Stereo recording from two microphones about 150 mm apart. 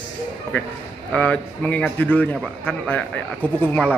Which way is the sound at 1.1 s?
10° left (ahead or behind).